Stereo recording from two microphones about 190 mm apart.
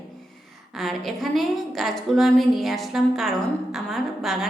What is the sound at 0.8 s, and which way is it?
A woman's voice, centre (ahead or behind).